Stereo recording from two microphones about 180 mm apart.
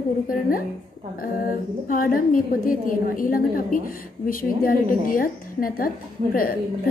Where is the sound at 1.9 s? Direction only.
50° left (ahead or behind).